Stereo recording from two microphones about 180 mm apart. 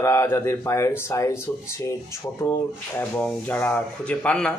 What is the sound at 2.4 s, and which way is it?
Speech, 15° left (ahead or behind).